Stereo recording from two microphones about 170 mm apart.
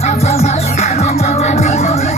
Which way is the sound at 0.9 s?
40° left (ahead or behind).